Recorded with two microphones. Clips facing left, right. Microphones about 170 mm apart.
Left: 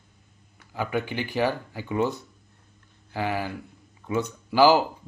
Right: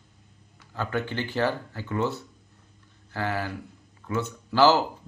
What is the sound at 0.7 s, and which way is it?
Speech, 10° left (ahead or behind).